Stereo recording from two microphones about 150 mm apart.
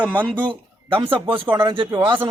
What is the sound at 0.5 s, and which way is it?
A man's voice, 35° right (ahead or behind).